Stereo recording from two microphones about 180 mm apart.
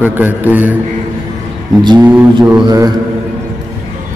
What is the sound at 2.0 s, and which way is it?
Speech, 10° right (ahead or behind).